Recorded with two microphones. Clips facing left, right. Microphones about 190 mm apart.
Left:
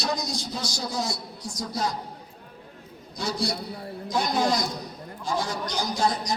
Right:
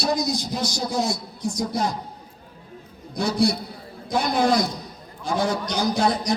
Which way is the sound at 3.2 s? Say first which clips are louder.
Right 7 dB; 60° right (ahead or behind).